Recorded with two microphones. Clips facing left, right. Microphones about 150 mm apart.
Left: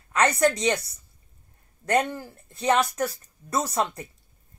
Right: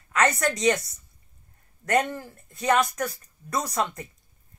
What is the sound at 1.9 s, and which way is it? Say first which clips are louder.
Speech: even; centre (ahead or behind).